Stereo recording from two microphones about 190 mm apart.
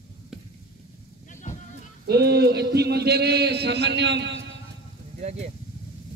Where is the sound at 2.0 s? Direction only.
60° right (ahead or behind).